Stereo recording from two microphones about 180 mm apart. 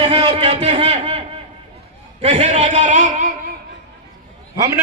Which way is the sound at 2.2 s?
40° right (ahead or behind).